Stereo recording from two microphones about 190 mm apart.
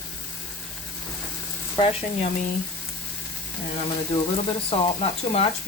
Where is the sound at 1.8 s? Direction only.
30° left (ahead or behind).